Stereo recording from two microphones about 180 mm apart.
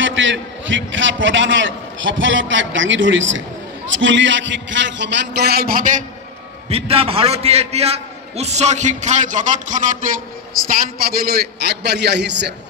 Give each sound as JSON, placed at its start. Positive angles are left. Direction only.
{"t": 0.0, "sound": "a man's voice", "side_deg": -90}
{"t": 6.7, "sound": "a man's voice", "side_deg": -35}
{"t": 10.7, "sound": "a man's voice", "side_deg": -55}